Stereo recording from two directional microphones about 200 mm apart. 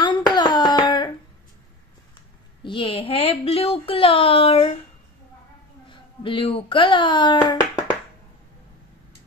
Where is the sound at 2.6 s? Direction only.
25° left (ahead or behind).